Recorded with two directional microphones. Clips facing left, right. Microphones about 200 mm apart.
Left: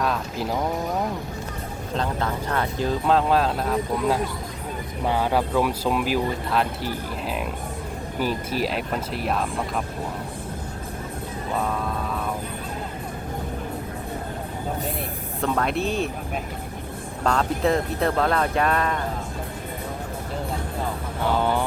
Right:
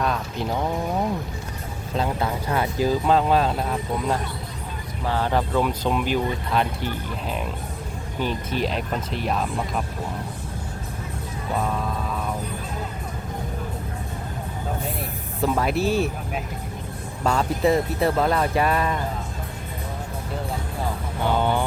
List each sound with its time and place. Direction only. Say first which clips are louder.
0.0 s a sound: even; centre (ahead or behind)
2.0 s speech: right 2 dB; 10° right (ahead or behind)
5.0 s speech: left 1 dB; 10° left (ahead or behind)
8.2 s speech: even; 5° left (ahead or behind)
15.4 s speech: right 2 dB; 5° right (ahead or behind)
17.2 s speech: right 1 dB; 5° right (ahead or behind)
21.2 s speech: even; centre (ahead or behind)